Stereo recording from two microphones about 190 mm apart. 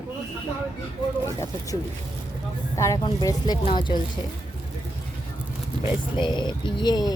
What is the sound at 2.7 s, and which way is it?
Speech, 15° left (ahead or behind).